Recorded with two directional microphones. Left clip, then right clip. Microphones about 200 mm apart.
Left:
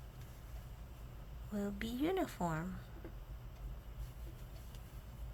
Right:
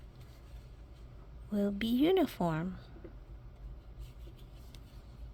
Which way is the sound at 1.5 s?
45° right (ahead or behind).